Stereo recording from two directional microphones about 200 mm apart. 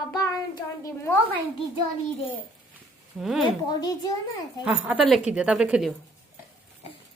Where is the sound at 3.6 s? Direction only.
20° left (ahead or behind).